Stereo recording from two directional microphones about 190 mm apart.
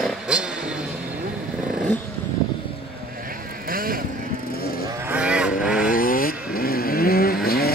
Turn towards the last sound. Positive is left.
turn(degrees=50)  # may be behind; listen again after turning